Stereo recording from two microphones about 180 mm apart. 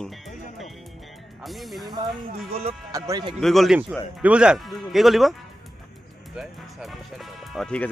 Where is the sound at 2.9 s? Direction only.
20° right (ahead or behind).